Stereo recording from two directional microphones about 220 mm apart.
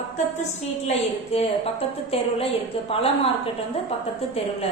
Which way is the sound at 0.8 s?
25° left (ahead or behind).